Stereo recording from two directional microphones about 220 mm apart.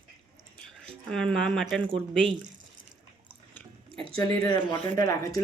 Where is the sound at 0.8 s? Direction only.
5° left (ahead or behind).